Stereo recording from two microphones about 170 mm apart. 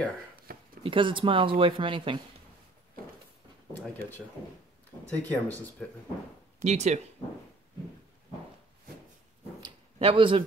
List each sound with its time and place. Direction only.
0.8 s speech: 30° right (ahead or behind)
5.2 s speech: 10° left (ahead or behind)
6.6 s speech: 40° right (ahead or behind)
9.6 s a sound: 30° right (ahead or behind)